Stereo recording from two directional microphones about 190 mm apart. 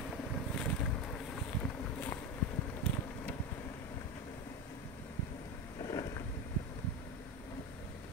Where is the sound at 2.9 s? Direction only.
5° left (ahead or behind).